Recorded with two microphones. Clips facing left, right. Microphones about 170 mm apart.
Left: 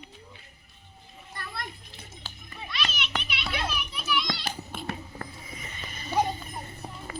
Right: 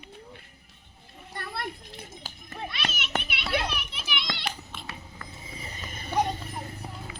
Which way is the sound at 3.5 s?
65° right (ahead or behind).